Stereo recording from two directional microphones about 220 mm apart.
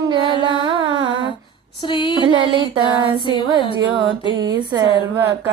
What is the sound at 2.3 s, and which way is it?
Music, 20° right (ahead or behind).